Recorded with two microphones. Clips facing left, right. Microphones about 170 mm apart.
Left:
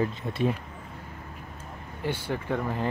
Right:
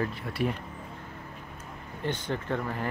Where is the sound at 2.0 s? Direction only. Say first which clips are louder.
Left 1 dB; 10° left (ahead or behind).